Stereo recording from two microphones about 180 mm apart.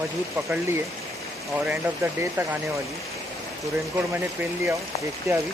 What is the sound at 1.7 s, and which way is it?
Speech, 15° right (ahead or behind).